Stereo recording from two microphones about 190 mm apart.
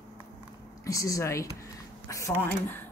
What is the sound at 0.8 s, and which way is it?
Speech, 15° left (ahead or behind).